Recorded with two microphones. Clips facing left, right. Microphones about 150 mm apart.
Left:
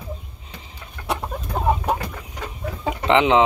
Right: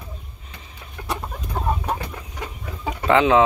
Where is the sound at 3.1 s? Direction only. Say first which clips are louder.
Even; 20° left (ahead or behind).